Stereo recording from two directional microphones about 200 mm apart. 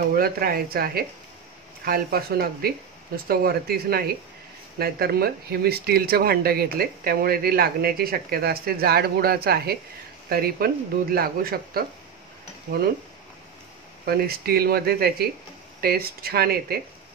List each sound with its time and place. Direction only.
0.1 s speech: 50° right (ahead or behind)
14.0 s speech: 50° right (ahead or behind)